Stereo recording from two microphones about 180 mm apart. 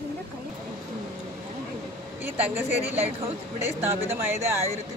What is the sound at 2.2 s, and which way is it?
A woman's voice, 10° right (ahead or behind).